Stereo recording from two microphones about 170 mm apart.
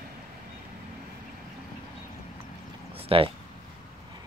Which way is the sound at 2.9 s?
35° right (ahead or behind).